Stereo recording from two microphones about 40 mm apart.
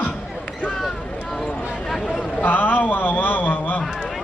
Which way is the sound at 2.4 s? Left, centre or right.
Left.